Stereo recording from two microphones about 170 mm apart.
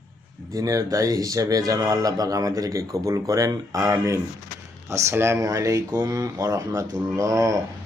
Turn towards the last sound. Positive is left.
turn(degrees=-20)  # may be behind; listen again after turning